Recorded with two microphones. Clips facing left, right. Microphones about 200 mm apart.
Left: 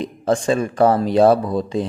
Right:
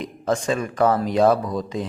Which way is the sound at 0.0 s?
30° left (ahead or behind).